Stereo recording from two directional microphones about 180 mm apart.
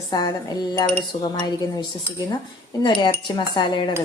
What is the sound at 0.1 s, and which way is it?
A woman's voice, 25° left (ahead or behind).